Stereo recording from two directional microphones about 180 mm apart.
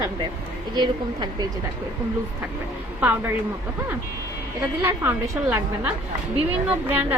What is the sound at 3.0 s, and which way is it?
Speech, 10° right (ahead or behind).